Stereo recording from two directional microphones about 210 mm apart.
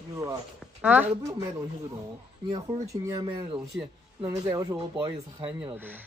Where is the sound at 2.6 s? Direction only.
15° right (ahead or behind).